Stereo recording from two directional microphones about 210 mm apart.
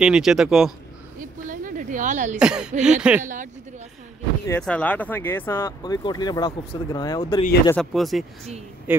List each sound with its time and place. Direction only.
0.0 s speech: 5° right (ahead or behind)
1.2 s a sound: 40° right (ahead or behind)
2.3 s speech: 5° right (ahead or behind)
4.5 s speech: 5° left (ahead or behind); by 7.7 s 20° left (ahead or behind)
7.7 s a man's voice: centre (ahead or behind)